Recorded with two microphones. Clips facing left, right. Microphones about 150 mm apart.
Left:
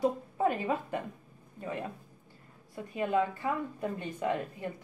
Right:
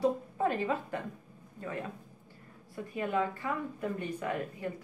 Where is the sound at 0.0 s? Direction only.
15° left (ahead or behind).